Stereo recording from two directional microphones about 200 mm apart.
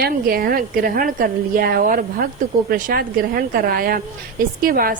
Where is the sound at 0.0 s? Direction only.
50° right (ahead or behind).